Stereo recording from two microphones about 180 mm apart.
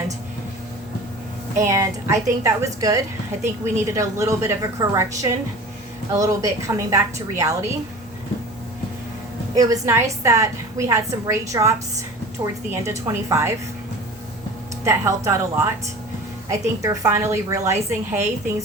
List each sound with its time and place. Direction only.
1.5 s a woman's voice: 15° right (ahead or behind)
9.6 s a woman's voice: 20° right (ahead or behind)
14.8 s a woman's voice: 15° right (ahead or behind)